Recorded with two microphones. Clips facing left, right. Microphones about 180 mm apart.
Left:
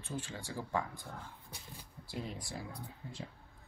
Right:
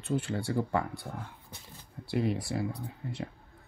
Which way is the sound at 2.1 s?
70° right (ahead or behind).